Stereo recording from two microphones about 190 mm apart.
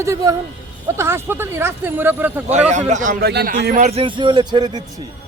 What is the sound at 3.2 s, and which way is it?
Speech, 55° right (ahead or behind).